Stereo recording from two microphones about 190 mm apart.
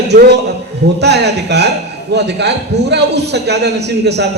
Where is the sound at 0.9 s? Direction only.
60° right (ahead or behind).